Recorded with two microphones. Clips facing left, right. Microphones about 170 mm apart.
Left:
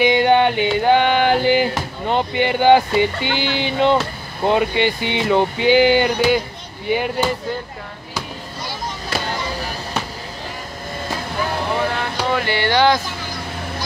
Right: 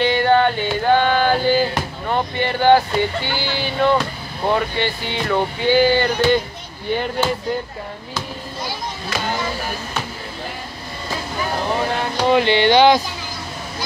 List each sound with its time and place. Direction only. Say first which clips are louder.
0.0 s music: left 1 dB; 15° left (ahead or behind)
4.5 s speech: left 3 dB; 15° left (ahead or behind)
12.3 s music: right 6 dB; 20° right (ahead or behind)